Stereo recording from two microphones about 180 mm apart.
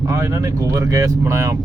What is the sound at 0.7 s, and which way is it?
Speech, 20° right (ahead or behind).